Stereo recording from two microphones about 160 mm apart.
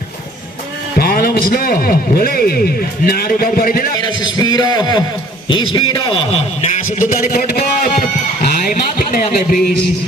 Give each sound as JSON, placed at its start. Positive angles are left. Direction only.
{"t": 0.9, "sound": "a man's voice", "side_deg": 70}
{"t": 4.0, "sound": "a man's voice", "side_deg": 25}
{"t": 6.7, "sound": "a man's voice", "side_deg": 55}